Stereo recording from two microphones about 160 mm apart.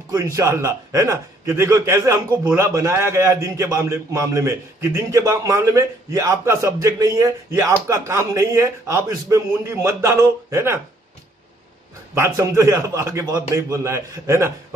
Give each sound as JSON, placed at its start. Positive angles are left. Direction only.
{"t": 0.1, "sound": "a man's voice", "side_deg": -20}
{"t": 12.2, "sound": "a man's voice", "side_deg": -20}